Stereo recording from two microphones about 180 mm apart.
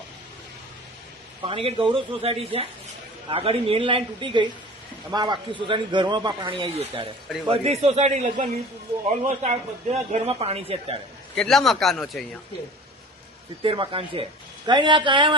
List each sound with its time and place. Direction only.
1.4 s a man's voice: 30° right (ahead or behind)
11.3 s speech: centre (ahead or behind)
13.6 s speech: 30° right (ahead or behind)